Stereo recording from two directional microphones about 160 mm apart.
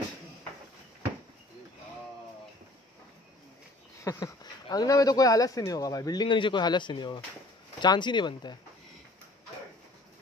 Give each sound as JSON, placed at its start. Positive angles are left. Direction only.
{"t": 4.0, "sound": "speech", "side_deg": 20}